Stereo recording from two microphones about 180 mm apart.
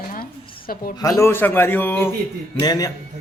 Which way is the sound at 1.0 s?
20° left (ahead or behind).